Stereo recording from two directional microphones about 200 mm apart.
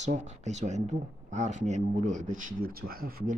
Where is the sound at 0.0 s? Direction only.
35° right (ahead or behind).